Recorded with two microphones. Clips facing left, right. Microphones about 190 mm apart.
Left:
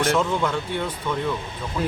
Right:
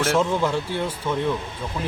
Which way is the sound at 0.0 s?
5° right (ahead or behind).